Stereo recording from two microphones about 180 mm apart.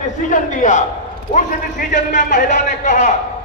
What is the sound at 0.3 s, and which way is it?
Speech, 45° left (ahead or behind).